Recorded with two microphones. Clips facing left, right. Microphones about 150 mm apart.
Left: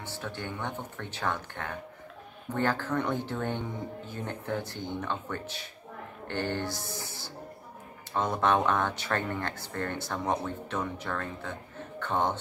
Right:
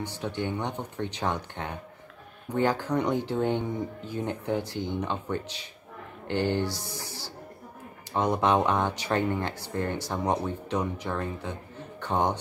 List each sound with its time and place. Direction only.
0.0 s a man's voice: 15° right (ahead or behind)